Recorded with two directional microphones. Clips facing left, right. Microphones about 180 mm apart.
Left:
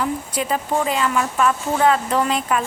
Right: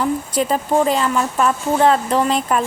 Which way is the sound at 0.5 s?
35° right (ahead or behind).